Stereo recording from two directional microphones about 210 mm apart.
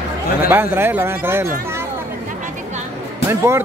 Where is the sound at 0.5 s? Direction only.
10° right (ahead or behind).